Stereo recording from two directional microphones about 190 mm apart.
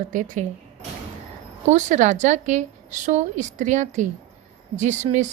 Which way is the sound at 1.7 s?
40° right (ahead or behind).